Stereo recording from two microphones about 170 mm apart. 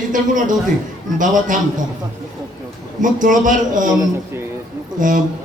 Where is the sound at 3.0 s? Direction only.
50° right (ahead or behind).